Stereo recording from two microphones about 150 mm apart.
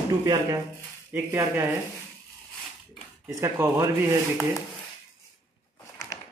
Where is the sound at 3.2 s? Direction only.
15° right (ahead or behind).